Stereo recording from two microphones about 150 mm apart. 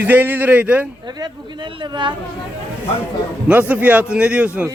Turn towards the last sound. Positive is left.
turn(degrees=-5)  # may be behind; listen again after turning